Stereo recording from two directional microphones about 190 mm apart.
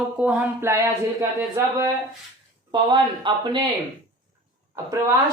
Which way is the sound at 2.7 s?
25° right (ahead or behind).